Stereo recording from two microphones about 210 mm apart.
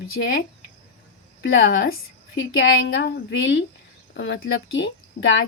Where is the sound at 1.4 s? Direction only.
55° left (ahead or behind).